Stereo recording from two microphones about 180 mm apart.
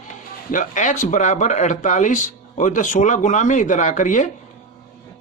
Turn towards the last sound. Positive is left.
turn(degrees=45)  # may be behind; listen again after turning